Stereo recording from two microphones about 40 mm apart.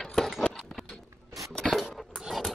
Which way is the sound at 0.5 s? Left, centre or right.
Centre.